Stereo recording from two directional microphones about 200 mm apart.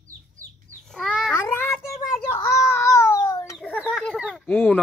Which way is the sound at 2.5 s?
15° left (ahead or behind).